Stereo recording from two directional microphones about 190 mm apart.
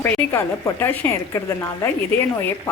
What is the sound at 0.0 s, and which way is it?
A woman's voice, 10° left (ahead or behind).